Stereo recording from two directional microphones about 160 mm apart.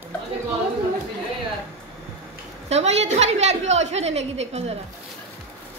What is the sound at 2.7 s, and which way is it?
A woman's voice, 45° right (ahead or behind).